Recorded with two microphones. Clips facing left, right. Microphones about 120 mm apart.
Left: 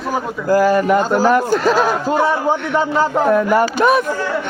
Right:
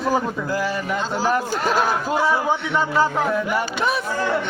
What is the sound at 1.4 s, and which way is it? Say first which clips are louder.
Speech: left 7 dB; 90° left.